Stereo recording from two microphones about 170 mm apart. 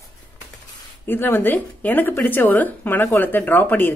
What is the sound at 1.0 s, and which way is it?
Speech, 10° left (ahead or behind).